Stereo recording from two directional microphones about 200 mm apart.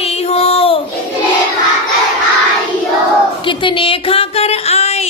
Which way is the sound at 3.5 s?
25° left (ahead or behind).